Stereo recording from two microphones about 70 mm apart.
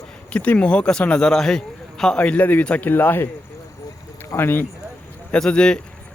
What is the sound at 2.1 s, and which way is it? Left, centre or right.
A man's voice, left.